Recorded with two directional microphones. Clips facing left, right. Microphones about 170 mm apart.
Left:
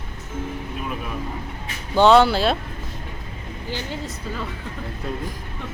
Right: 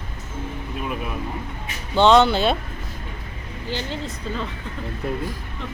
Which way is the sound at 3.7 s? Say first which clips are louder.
Right 2 dB; 10° left (ahead or behind).